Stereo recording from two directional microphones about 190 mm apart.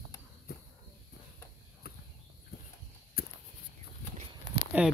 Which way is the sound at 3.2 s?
50° left (ahead or behind).